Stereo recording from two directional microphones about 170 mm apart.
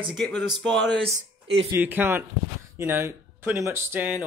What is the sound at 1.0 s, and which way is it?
Speech, 35° right (ahead or behind).